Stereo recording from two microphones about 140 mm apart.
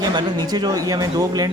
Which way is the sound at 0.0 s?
30° right (ahead or behind).